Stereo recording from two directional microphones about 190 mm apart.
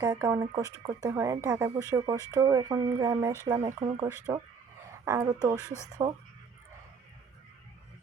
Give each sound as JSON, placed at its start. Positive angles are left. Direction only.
{"t": 0.0, "sound": "speech", "side_deg": -15}